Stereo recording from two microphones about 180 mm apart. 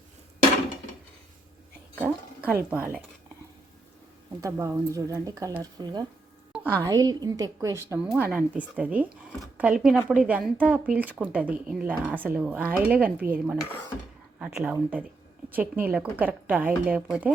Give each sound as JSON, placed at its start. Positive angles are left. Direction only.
{"t": 2.0, "sound": "speech", "side_deg": -10}
{"t": 4.4, "sound": "speech", "side_deg": -15}
{"t": 6.5, "sound": "speech", "side_deg": -10}